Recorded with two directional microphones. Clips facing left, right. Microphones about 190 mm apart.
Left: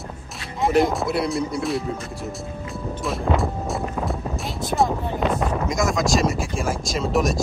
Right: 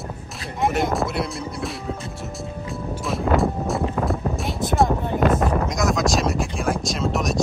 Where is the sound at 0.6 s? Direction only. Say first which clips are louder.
Left 2 dB; centre (ahead or behind).